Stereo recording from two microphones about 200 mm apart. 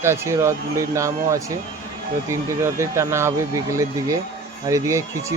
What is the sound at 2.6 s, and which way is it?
Speech, 15° right (ahead or behind).